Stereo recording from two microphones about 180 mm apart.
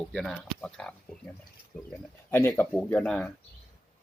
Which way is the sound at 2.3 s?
10° left (ahead or behind).